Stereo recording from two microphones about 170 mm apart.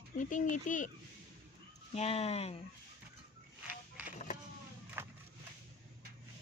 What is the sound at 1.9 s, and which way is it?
Speech, 35° left (ahead or behind).